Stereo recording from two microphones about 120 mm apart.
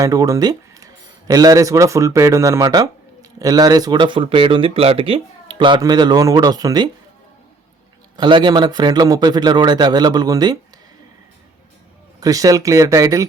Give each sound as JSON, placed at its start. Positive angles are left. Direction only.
{"t": 0.0, "sound": "speech", "side_deg": -30}
{"t": 8.1, "sound": "speech", "side_deg": -40}
{"t": 12.2, "sound": "speech", "side_deg": -30}